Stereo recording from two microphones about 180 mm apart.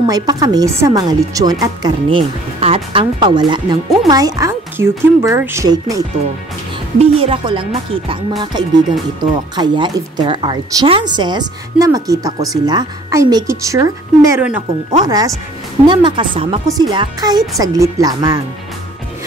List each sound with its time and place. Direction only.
0.0 s speech: 20° right (ahead or behind)
7.0 s speech: 30° right (ahead or behind)